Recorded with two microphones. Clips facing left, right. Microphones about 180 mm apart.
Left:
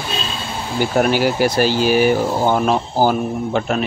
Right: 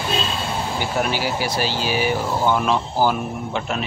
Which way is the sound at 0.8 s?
50° left (ahead or behind).